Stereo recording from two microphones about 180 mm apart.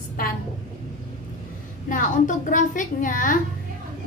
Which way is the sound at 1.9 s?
45° left (ahead or behind).